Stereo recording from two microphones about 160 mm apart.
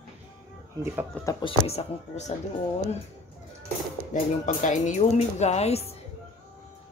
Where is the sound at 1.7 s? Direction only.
45° left (ahead or behind).